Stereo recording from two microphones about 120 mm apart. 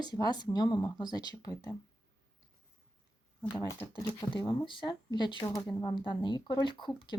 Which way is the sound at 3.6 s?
30° left (ahead or behind).